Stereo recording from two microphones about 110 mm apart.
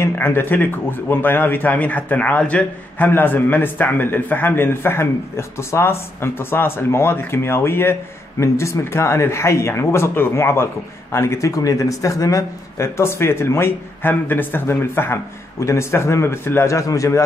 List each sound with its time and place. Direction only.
0.0 s speech: 20° left (ahead or behind)